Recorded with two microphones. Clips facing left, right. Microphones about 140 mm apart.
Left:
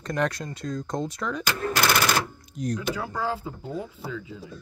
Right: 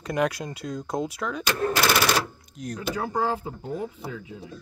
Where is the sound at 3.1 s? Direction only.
45° right (ahead or behind).